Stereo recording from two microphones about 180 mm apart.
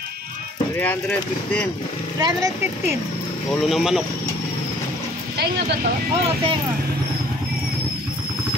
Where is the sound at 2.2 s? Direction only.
20° right (ahead or behind).